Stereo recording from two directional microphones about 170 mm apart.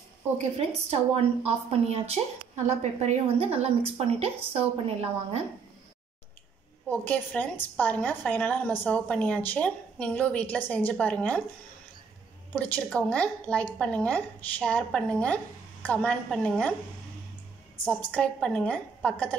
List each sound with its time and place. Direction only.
0.6 s a woman's voice: 35° right (ahead or behind)
6.9 s a woman's voice: 10° left (ahead or behind)
12.5 s a woman's voice: 10° left (ahead or behind)
17.8 s a woman's voice: 10° left (ahead or behind)